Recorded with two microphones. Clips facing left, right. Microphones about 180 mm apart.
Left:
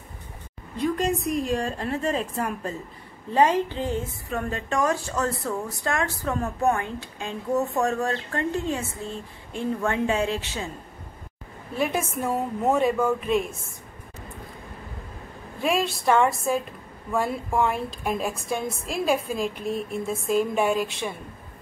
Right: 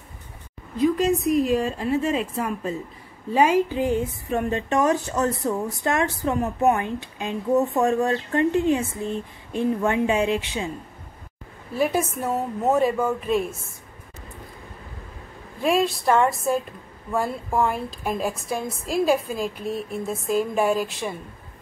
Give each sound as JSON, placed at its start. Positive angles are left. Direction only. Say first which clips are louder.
{"t": 0.7, "sound": "a woman's voice", "louder": "right 4 dB", "side_deg": 0}
{"t": 11.8, "sound": "a woman's voice", "louder": "right 3 dB", "side_deg": -5}
{"t": 15.6, "sound": "a woman's voice", "louder": "right 3 dB", "side_deg": 0}